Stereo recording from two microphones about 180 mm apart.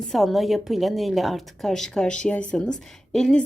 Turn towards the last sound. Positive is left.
turn(degrees=5)  # may be behind; listen again after turning